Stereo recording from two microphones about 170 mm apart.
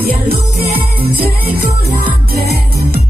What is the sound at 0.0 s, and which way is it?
Music, 65° right (ahead or behind).